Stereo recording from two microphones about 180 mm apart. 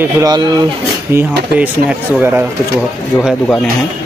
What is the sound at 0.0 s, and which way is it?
Speech, 20° right (ahead or behind).